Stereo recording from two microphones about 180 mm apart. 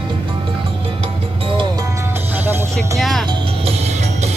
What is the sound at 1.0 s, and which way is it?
Music, 30° right (ahead or behind).